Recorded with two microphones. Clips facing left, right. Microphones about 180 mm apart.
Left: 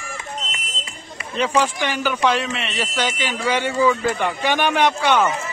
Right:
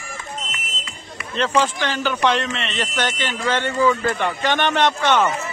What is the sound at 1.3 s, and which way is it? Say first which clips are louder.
A man's voice: even; 10° left (ahead or behind).